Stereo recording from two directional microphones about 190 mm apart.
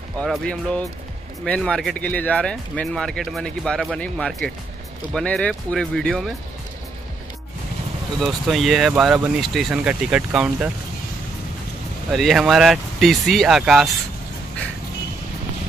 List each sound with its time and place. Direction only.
0.2 s speech: 5° left (ahead or behind)
8.2 s speech: centre (ahead or behind)
12.1 s speech: centre (ahead or behind)